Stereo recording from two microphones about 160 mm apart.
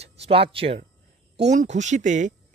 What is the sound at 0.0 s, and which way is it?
Speech, 40° right (ahead or behind).